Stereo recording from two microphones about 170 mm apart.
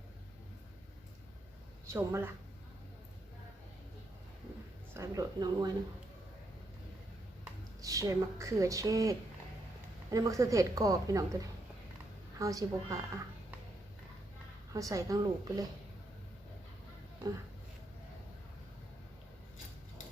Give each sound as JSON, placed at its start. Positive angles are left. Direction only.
{"t": 1.9, "sound": "a woman's voice", "side_deg": -15}
{"t": 4.9, "sound": "a woman's voice", "side_deg": -20}
{"t": 7.8, "sound": "a woman's voice", "side_deg": -20}
{"t": 14.7, "sound": "a woman's voice", "side_deg": -20}